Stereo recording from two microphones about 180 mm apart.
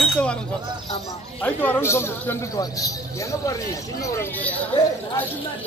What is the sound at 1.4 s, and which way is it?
A man's voice, 10° left (ahead or behind).